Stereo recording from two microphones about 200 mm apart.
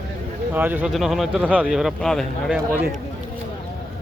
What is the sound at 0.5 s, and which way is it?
Speech, 10° right (ahead or behind).